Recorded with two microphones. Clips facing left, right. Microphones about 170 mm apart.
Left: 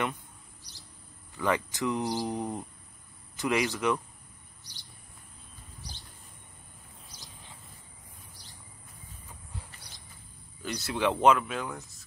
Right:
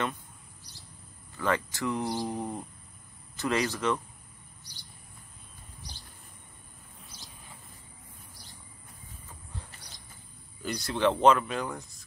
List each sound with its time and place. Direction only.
1.3 s speech: 15° left (ahead or behind)
10.6 s speech: centre (ahead or behind)